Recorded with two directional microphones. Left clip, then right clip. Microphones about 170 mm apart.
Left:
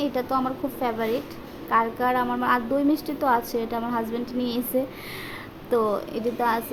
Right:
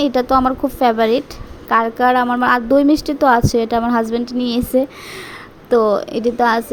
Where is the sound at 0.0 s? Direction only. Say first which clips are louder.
Right 11 dB; 45° right (ahead or behind).